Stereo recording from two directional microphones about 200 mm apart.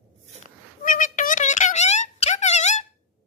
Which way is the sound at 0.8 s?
40° left (ahead or behind).